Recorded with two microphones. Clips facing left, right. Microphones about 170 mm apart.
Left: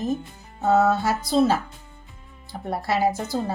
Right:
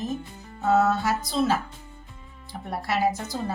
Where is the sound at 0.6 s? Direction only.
30° left (ahead or behind).